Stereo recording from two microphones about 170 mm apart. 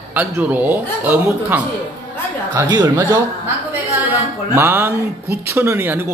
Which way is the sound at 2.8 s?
15° right (ahead or behind).